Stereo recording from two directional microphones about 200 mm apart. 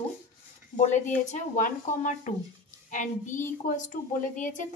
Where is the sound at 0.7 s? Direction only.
40° left (ahead or behind).